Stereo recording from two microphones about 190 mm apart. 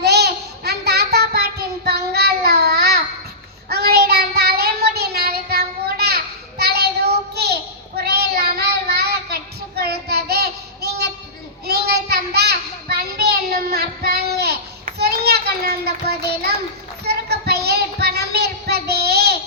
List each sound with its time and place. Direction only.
0.0 s child singing: 60° right (ahead or behind)